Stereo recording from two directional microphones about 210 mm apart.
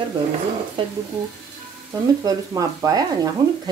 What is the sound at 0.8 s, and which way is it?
Speech, 25° right (ahead or behind).